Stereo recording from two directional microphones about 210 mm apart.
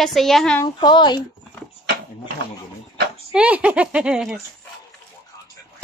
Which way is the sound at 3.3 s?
5° right (ahead or behind).